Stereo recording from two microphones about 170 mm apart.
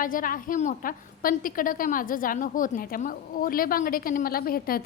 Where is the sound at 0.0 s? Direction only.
55° left (ahead or behind).